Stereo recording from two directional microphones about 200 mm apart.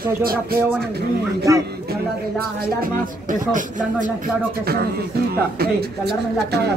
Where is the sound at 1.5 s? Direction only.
15° right (ahead or behind).